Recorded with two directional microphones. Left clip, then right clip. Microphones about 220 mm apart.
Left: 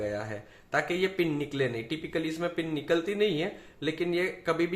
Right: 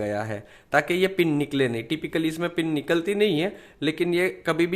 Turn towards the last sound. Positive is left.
turn(degrees=-50)  # may be behind; listen again after turning